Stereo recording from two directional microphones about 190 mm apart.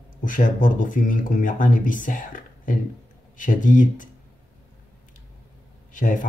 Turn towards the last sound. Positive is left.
turn(degrees=45)  # may be behind; listen again after turning